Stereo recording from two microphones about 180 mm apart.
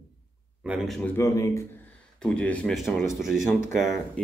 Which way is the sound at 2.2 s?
5° left (ahead or behind).